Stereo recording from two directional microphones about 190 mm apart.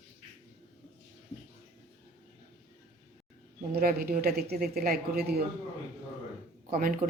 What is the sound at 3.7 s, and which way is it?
Speech, 50° right (ahead or behind).